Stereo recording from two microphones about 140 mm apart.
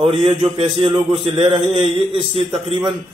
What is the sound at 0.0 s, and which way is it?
A man's voice, 40° right (ahead or behind).